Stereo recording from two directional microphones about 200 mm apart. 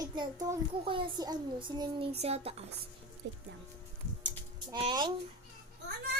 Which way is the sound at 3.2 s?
60° right (ahead or behind).